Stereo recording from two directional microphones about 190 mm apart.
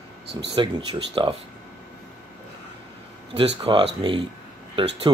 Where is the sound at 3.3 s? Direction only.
30° right (ahead or behind).